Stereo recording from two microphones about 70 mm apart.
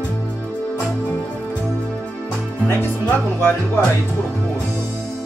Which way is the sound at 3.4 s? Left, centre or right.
Left.